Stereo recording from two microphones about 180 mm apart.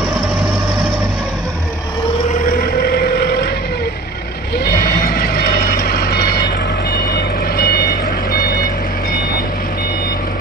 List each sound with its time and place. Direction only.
2.9 s a sound: 60° left (ahead or behind)
4.6 s vehicle: 60° left (ahead or behind)
6.9 s reversing beeps: 60° left (ahead or behind)